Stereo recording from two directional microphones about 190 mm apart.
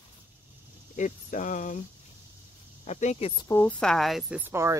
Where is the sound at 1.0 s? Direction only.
40° left (ahead or behind).